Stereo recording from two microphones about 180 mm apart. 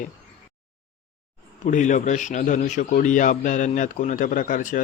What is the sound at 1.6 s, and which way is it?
A man's voice, 45° left (ahead or behind).